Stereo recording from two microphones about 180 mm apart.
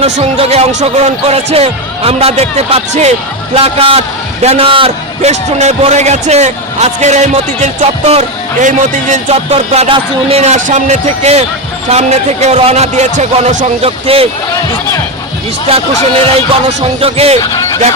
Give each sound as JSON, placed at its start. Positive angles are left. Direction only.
{"t": 0.0, "sound": "a man's voice", "side_deg": -35}
{"t": 15.7, "sound": "a man's voice", "side_deg": -30}